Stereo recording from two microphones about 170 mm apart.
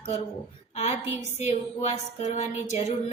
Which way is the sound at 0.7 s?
40° left (ahead or behind).